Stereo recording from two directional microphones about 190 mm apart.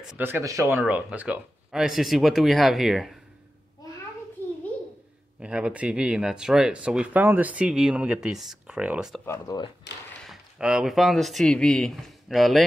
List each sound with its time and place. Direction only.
0.0 s speech: 10° right (ahead or behind)
4.4 s a sound: 10° left (ahead or behind)
5.4 s speech: 5° right (ahead or behind)
9.2 s speech: 15° left (ahead or behind)
9.9 s speech: 60° left (ahead or behind)
10.2 s speech: 5° right (ahead or behind)